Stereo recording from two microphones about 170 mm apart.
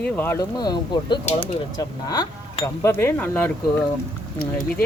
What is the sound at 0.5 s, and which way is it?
Speech, 25° left (ahead or behind).